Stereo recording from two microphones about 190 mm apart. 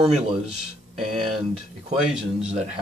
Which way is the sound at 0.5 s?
Centre (ahead or behind).